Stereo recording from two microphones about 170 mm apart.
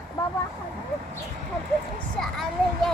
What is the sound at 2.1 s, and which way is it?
Speech, 5° left (ahead or behind).